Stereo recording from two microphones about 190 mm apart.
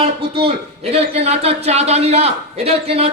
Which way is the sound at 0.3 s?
30° right (ahead or behind).